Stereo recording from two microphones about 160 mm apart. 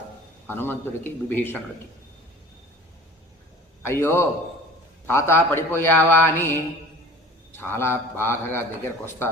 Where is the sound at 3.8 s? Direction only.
15° left (ahead or behind).